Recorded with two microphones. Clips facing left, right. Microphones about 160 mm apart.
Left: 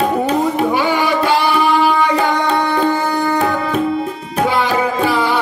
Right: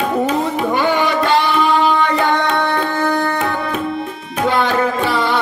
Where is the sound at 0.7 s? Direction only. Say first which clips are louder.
Even; 5° left (ahead or behind).